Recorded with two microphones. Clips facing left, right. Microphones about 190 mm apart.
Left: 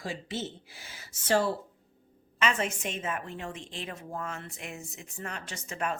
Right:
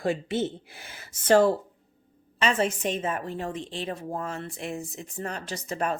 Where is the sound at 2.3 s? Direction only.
35° right (ahead or behind).